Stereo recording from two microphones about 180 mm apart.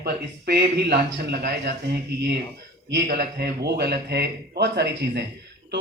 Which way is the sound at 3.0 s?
65° right (ahead or behind).